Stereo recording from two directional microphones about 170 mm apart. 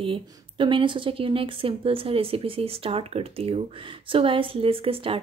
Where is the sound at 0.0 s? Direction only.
30° right (ahead or behind).